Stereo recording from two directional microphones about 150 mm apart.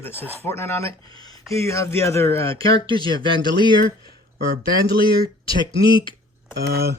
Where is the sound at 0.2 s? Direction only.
15° right (ahead or behind).